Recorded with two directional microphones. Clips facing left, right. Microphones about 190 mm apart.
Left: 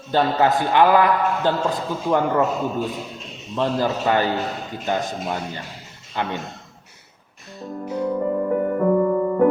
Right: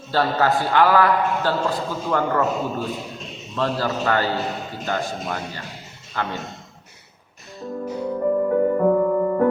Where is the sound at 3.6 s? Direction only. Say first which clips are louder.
Left 2 dB; 15° left (ahead or behind).